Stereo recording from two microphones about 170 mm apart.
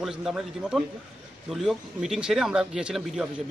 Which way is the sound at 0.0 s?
5° right (ahead or behind).